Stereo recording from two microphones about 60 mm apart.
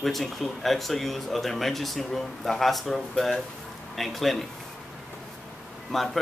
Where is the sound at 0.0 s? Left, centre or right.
Centre.